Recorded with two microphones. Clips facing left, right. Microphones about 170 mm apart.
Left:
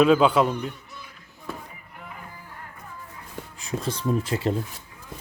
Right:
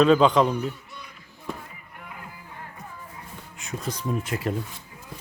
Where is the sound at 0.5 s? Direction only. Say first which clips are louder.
Right 2 dB; 5° right (ahead or behind).